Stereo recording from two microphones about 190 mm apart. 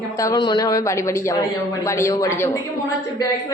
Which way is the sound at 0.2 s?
20° left (ahead or behind).